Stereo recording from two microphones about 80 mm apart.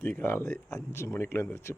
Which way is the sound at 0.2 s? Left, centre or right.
Left.